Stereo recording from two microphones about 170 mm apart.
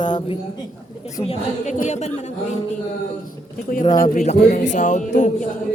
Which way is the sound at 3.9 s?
50° left (ahead or behind).